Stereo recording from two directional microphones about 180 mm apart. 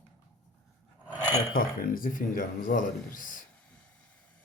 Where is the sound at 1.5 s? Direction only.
50° left (ahead or behind).